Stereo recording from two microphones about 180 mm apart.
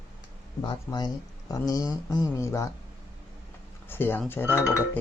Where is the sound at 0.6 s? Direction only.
25° left (ahead or behind).